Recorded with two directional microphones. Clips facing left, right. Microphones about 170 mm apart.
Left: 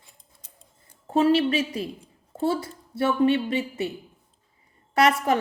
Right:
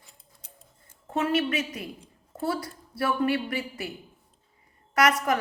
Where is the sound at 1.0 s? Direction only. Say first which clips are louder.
Left 6 dB; 30° left (ahead or behind).